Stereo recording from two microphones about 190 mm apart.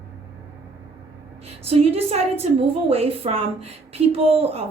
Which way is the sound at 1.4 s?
30° right (ahead or behind).